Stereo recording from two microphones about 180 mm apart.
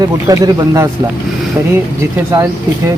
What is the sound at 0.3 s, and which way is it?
Speech, 20° right (ahead or behind).